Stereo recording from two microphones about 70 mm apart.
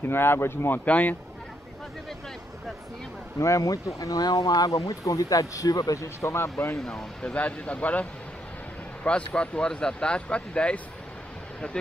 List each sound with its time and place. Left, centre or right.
0.0 s speech: left
0.8 s speech: left
3.3 s speech: left
6.8 s speech: centre